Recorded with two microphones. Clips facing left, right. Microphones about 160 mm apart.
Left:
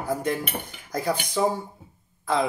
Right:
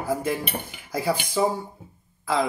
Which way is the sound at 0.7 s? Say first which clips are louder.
Right 1 dB; 10° right (ahead or behind).